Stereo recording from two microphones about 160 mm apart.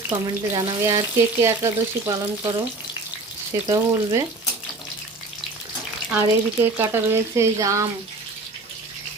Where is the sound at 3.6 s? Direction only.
25° right (ahead or behind).